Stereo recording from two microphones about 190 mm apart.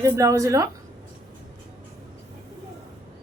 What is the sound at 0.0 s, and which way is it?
Speech, 15° right (ahead or behind).